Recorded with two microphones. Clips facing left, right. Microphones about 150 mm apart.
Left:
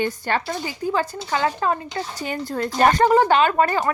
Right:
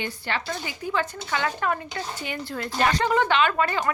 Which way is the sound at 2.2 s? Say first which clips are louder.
Left 6 dB; 40° left (ahead or behind).